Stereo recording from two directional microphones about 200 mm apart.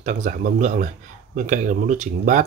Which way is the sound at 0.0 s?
40° right (ahead or behind).